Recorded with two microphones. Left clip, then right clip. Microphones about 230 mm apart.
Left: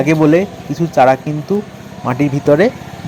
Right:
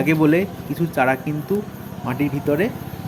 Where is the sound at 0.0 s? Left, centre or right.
Centre.